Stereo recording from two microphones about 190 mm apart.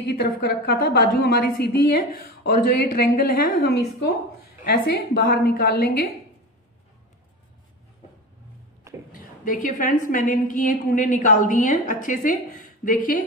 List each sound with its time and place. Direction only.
0.0 s a woman's voice: 55° left (ahead or behind)
9.1 s a woman's voice: 45° left (ahead or behind)